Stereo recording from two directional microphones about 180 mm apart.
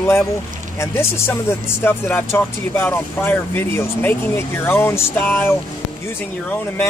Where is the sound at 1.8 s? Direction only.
10° left (ahead or behind).